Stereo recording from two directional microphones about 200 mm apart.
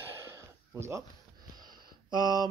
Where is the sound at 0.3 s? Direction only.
15° right (ahead or behind).